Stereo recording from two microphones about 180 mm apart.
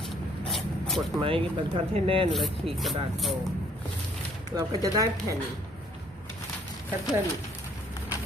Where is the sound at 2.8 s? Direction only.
Centre (ahead or behind).